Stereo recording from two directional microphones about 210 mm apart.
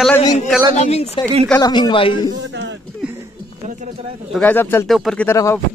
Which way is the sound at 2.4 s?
55° right (ahead or behind).